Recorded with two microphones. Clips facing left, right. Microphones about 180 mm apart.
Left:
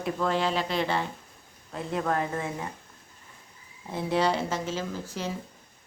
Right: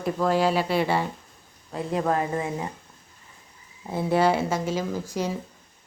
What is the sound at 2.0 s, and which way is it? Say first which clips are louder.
Speech: right 3 dB; 20° right (ahead or behind).